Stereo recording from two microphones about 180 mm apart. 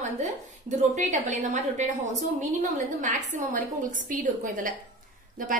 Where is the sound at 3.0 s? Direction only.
45° right (ahead or behind).